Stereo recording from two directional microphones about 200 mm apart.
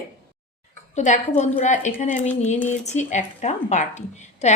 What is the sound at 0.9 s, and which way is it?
Speech, 35° left (ahead or behind).